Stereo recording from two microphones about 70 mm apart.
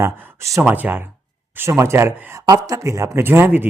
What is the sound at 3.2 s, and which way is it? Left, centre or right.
Speech, right.